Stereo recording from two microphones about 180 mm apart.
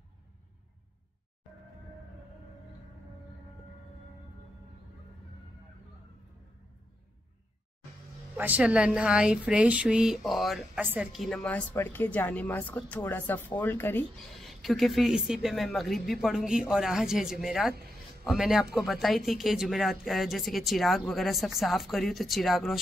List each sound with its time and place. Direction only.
8.4 s speech: 10° right (ahead or behind)
11.1 s speech: 5° left (ahead or behind)
14.4 s speech: centre (ahead or behind)